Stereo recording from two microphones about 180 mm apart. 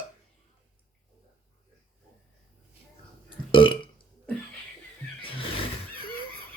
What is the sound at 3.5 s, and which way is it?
Burping, 30° left (ahead or behind).